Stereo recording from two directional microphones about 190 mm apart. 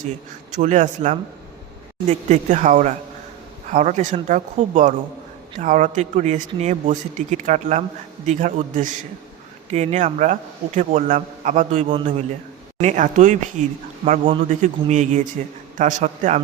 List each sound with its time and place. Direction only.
0.5 s speech: 40° right (ahead or behind)